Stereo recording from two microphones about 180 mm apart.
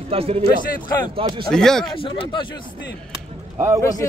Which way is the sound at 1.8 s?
30° left (ahead or behind).